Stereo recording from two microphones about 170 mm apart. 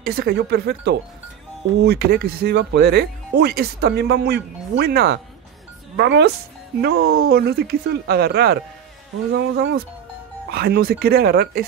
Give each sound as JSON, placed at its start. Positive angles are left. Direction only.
{"t": 0.0, "sound": "speech", "side_deg": -70}
{"t": 1.9, "sound": "speech", "side_deg": -65}
{"t": 5.9, "sound": "speech", "side_deg": -85}
{"t": 6.8, "sound": "speech", "side_deg": -65}
{"t": 9.3, "sound": "speech", "side_deg": -90}
{"t": 10.5, "sound": "speech", "side_deg": -65}